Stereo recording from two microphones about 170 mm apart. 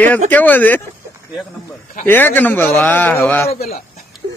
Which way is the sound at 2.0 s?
10° left (ahead or behind).